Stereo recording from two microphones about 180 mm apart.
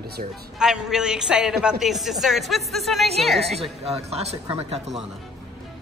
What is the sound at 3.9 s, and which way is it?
Speech, 35° right (ahead or behind).